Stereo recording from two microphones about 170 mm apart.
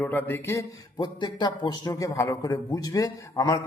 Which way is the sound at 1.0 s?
25° left (ahead or behind).